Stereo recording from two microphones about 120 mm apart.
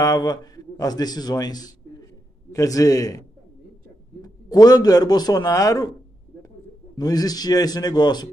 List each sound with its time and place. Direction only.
0.0 s a man's voice: 35° left (ahead or behind)
4.2 s a man's voice: 35° left (ahead or behind)
7.0 s a man's voice: 30° left (ahead or behind)